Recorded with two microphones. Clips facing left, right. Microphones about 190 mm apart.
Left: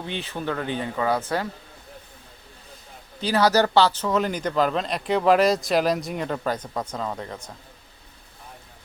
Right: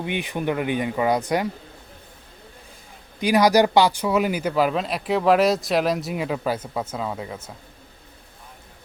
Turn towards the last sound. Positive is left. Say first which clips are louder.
# right 1 dB
turn(degrees=-5)  # may be behind; listen again after turning